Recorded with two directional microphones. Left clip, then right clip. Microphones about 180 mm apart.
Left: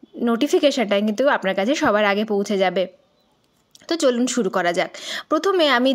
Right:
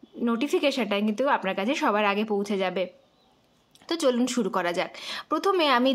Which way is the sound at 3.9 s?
20° left (ahead or behind).